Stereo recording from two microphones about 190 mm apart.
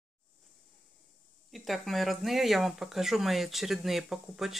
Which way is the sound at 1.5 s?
Centre (ahead or behind).